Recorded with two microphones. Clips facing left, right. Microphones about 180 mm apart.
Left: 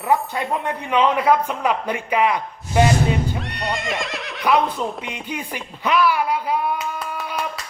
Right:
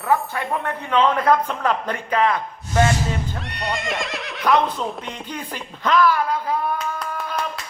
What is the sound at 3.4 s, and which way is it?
A woman's voice, centre (ahead or behind).